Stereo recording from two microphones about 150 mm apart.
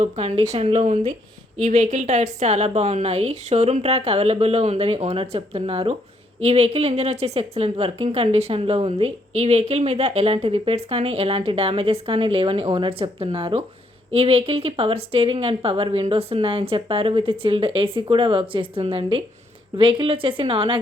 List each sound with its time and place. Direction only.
0.0 s a woman's voice: 45° right (ahead or behind)